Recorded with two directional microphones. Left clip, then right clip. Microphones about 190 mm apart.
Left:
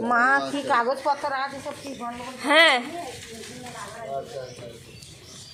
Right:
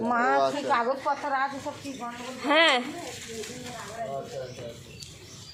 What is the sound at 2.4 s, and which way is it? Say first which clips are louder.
Speech: left 4 dB; 15° left (ahead or behind).